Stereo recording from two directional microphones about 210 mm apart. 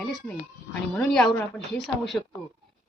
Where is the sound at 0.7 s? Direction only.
5° left (ahead or behind).